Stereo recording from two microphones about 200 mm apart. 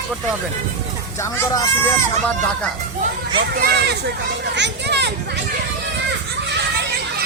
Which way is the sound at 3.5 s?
50° right (ahead or behind).